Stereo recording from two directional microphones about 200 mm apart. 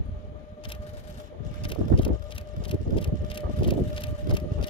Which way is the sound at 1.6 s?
25° left (ahead or behind).